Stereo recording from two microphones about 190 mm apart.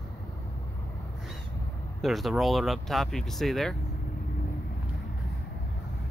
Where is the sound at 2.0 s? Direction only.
Centre (ahead or behind).